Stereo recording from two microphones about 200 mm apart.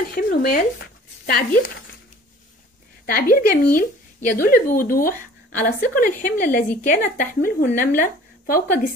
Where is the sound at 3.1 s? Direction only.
45° left (ahead or behind).